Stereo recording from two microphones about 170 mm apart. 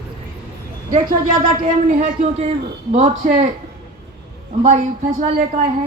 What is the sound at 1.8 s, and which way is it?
A man's voice, 50° right (ahead or behind).